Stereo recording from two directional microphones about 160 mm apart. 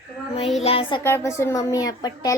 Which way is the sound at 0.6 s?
35° left (ahead or behind).